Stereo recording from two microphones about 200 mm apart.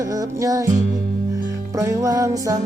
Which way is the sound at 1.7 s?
15° right (ahead or behind).